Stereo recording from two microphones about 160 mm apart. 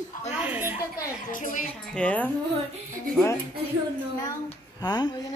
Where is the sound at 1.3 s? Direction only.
55° left (ahead or behind).